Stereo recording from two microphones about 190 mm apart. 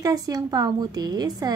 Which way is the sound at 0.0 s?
20° right (ahead or behind).